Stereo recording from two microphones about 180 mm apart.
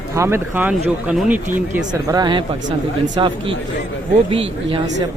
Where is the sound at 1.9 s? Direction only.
20° right (ahead or behind).